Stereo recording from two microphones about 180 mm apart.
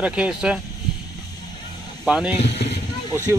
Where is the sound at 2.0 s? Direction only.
5° right (ahead or behind).